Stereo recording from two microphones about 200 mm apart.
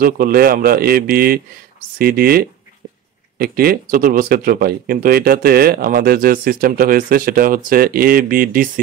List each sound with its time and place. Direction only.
0.0 s speech: 50° right (ahead or behind)